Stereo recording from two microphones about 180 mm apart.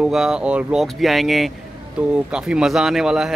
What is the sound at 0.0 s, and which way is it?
Speech, 5° right (ahead or behind).